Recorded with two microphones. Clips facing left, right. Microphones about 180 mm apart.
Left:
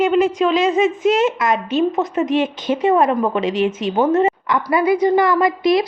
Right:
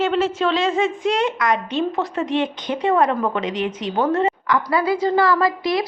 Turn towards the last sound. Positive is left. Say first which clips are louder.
# left 4 dB
turn(degrees=20)  # may be behind; listen again after turning